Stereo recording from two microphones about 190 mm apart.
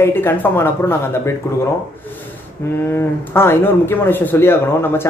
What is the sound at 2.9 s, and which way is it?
Speech, 10° left (ahead or behind).